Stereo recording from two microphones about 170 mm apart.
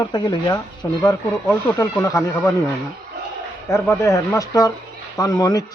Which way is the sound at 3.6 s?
15° left (ahead or behind).